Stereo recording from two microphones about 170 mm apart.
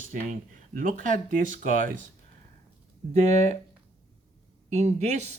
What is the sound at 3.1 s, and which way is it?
Speech, 40° right (ahead or behind).